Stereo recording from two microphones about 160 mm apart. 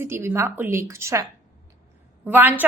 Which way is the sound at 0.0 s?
15° right (ahead or behind).